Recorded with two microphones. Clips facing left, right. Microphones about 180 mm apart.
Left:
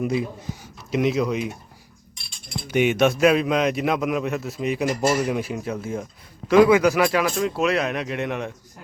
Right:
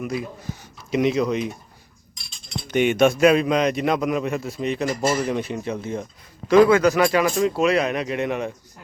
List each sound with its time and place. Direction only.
0.0 s speech: 25° left (ahead or behind)
0.6 s speech: centre (ahead or behind)
2.6 s a man's voice: 5° left (ahead or behind)